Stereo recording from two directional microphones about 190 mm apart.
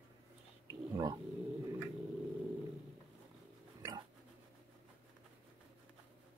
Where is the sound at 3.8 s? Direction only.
20° right (ahead or behind).